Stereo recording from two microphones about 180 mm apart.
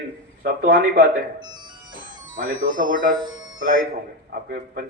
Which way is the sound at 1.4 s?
25° right (ahead or behind).